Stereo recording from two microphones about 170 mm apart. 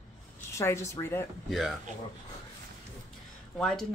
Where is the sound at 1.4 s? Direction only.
Centre (ahead or behind).